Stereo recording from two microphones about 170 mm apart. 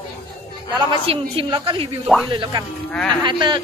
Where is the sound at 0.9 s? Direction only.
30° right (ahead or behind).